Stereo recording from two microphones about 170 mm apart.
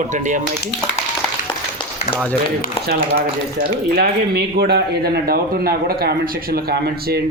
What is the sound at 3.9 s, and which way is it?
Speech, 70° right (ahead or behind).